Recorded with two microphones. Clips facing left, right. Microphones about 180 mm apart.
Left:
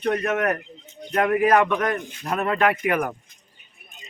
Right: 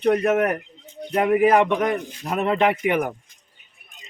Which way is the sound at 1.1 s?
10° right (ahead or behind).